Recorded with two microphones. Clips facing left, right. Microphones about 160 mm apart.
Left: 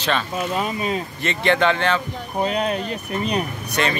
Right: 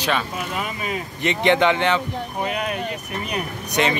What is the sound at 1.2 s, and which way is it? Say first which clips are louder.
Speech: right 2 dB; 15° right (ahead or behind).